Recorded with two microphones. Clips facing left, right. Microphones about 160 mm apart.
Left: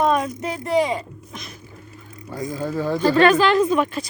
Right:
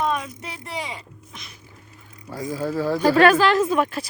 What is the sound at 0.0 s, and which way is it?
Speech, 45° left (ahead or behind).